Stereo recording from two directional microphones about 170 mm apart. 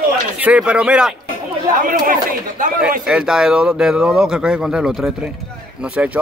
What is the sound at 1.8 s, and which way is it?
Speech, 55° right (ahead or behind).